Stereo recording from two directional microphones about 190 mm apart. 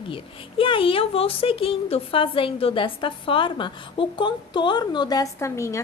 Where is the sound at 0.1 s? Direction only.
25° left (ahead or behind).